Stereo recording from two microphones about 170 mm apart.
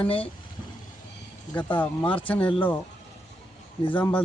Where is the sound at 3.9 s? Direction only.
10° left (ahead or behind).